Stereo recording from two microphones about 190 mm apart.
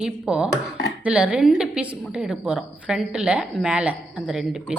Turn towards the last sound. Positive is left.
turn(degrees=-5)  # may be behind; listen again after turning